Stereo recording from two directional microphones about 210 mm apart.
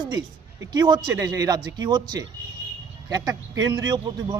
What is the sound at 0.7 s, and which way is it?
Speech, 20° right (ahead or behind).